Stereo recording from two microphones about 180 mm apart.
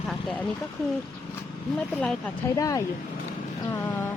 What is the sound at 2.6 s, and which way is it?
Speech, 20° left (ahead or behind).